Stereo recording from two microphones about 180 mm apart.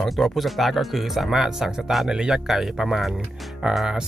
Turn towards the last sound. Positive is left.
turn(degrees=0)  # may be behind; listen again after turning